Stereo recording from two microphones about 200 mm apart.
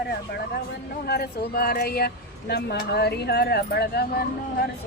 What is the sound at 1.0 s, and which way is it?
Speech, 50° left (ahead or behind).